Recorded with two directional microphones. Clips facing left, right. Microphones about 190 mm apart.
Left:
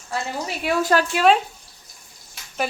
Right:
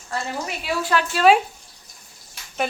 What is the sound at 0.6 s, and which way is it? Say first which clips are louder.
Speech: left 4 dB; 45° left (ahead or behind).